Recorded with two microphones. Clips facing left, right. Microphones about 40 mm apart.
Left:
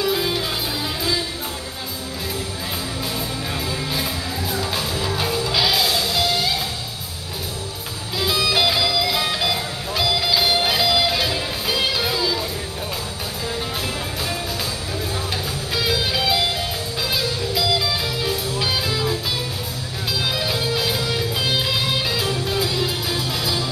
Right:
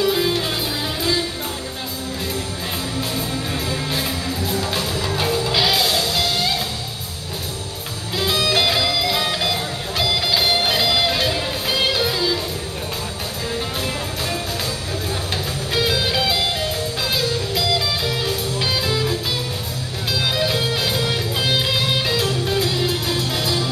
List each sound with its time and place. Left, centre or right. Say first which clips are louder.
0.0 s music: right 2 dB; centre
3.0 s music: right 2 dB; centre
8.2 s music: right 1 dB; centre
15.7 s music: right 2 dB; centre
20.2 s music: right 3 dB; centre